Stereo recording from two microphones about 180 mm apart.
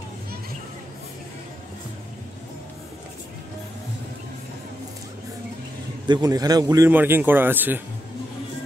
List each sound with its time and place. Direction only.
6.0 s speech: 20° right (ahead or behind)